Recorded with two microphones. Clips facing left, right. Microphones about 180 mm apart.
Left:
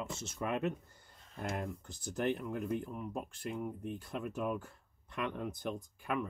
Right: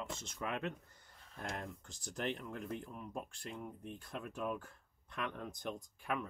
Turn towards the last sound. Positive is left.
turn(degrees=5)  # may be behind; listen again after turning